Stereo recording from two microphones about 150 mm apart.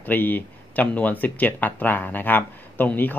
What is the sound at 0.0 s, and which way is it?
Speech, 10° left (ahead or behind).